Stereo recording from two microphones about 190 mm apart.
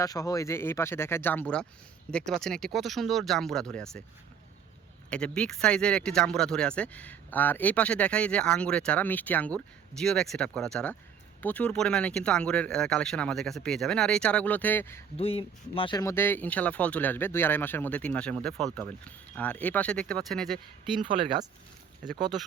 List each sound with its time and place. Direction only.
0.0 s speech: 20° left (ahead or behind)
5.0 s speech: 5° left (ahead or behind)
15.1 s speech: 30° left (ahead or behind); by 20.6 s centre (ahead or behind)
21.3 s speech: 40° right (ahead or behind)